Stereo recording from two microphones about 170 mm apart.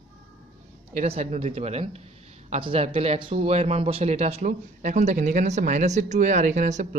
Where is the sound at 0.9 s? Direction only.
40° right (ahead or behind).